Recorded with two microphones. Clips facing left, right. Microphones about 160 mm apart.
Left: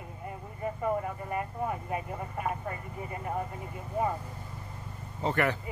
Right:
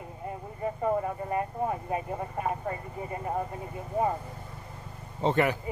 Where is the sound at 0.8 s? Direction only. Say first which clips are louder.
Right 3 dB; 35° right (ahead or behind).